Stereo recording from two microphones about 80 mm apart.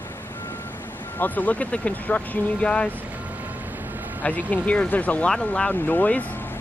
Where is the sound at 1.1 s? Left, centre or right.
Left.